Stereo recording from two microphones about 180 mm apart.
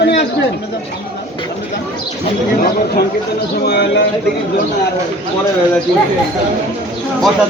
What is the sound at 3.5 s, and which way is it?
Speech, 60° left (ahead or behind).